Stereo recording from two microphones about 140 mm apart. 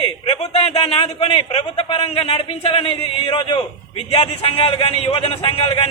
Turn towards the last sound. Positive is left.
turn(degrees=40)  # may be behind; listen again after turning